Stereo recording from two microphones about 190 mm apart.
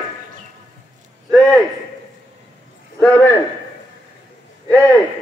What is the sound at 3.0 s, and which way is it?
Speech, 10° left (ahead or behind).